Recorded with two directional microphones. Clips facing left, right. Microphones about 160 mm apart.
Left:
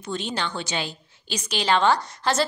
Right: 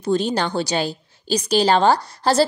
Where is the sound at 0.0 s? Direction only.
40° right (ahead or behind).